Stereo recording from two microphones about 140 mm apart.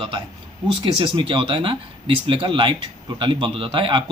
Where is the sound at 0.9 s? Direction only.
35° right (ahead or behind).